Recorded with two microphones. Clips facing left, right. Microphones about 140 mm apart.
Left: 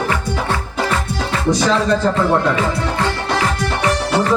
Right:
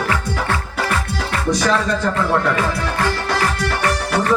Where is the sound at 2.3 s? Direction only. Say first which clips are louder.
Left 2 dB; 20° left (ahead or behind).